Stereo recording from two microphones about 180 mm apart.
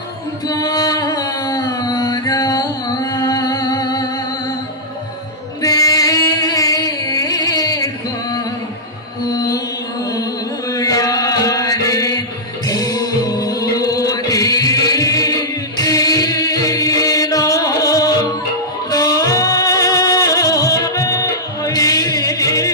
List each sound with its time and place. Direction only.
0.5 s music: 20° left (ahead or behind)
5.6 s music: 20° left (ahead or behind)
10.7 s chant: 20° left (ahead or behind)
12.6 s music: 20° left (ahead or behind)